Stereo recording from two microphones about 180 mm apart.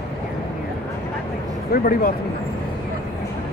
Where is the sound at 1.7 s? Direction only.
55° left (ahead or behind).